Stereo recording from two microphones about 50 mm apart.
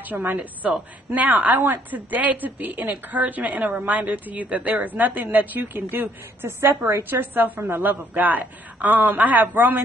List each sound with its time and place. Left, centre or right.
0.1 s a woman's voice: right